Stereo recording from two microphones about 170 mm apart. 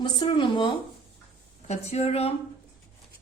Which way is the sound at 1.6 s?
40° left (ahead or behind).